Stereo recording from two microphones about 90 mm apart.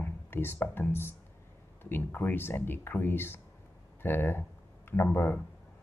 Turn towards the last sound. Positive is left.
turn(degrees=25)  # may be behind; listen again after turning